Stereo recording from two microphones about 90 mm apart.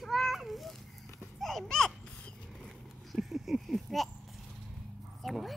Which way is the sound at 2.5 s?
Centre (ahead or behind).